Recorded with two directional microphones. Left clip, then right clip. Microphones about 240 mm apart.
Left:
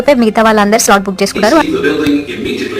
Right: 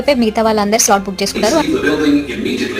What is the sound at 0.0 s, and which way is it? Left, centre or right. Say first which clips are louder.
A woman's voice: left 5 dB; centre.